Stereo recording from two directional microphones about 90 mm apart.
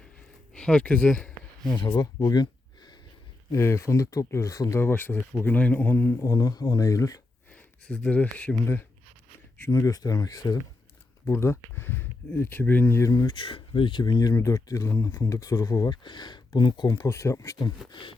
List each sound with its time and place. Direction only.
0.5 s speech: 10° left (ahead or behind)
1.8 s speech: 60° left (ahead or behind)
2.2 s a sound: 50° left (ahead or behind)
3.5 s speech: 35° left (ahead or behind)
4.8 s speech: 25° left (ahead or behind)
6.2 s speech: 40° left (ahead or behind)
7.5 s speech: 15° left (ahead or behind)
9.6 s speech: 40° left (ahead or behind)
11.3 s speech: 30° left (ahead or behind)
13.0 s speech: 35° left (ahead or behind)
13.2 s speech: 65° left (ahead or behind); by 15.9 s 40° left (ahead or behind)
15.9 s speech: 55° left (ahead or behind)
17.1 s speech: 35° left (ahead or behind)
17.9 s speech: 60° left (ahead or behind)